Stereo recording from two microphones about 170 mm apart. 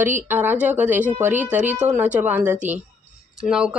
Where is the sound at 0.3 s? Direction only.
10° right (ahead or behind).